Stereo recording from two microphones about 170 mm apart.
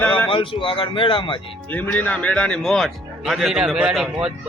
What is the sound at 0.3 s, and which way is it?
Speech, 30° left (ahead or behind).